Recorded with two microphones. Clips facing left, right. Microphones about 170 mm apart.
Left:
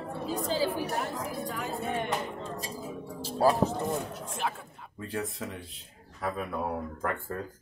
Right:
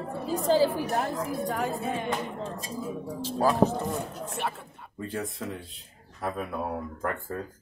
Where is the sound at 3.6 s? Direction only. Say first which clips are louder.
Right 5 dB; 55° right (ahead or behind).